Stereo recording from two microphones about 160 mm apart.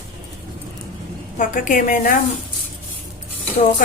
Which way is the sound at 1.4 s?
55° left (ahead or behind).